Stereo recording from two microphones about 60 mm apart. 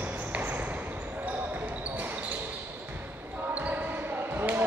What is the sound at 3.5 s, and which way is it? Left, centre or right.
Basketball bounce, right.